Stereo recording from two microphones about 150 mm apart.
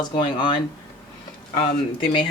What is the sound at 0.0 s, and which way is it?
Speech, 30° left (ahead or behind).